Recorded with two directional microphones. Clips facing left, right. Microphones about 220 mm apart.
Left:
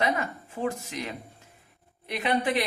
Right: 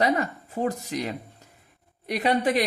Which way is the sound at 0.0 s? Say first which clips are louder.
Right 4 dB; 35° right (ahead or behind).